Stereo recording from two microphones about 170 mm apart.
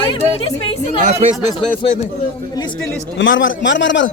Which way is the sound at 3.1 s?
90° left.